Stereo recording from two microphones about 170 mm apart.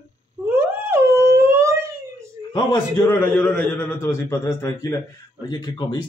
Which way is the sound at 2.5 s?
20° left (ahead or behind).